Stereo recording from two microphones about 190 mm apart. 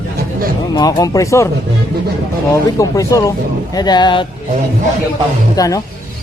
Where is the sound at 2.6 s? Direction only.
20° left (ahead or behind).